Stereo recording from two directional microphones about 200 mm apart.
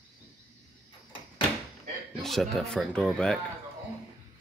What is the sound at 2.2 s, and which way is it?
Speech, centre (ahead or behind).